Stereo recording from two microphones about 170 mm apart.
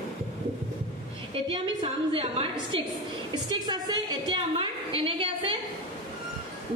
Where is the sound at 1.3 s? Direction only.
30° right (ahead or behind).